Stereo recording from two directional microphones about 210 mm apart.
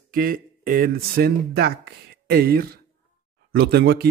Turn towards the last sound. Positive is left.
turn(degrees=-50)  # may be behind; listen again after turning